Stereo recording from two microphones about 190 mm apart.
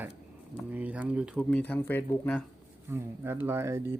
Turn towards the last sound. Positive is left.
turn(degrees=-15)  # may be behind; listen again after turning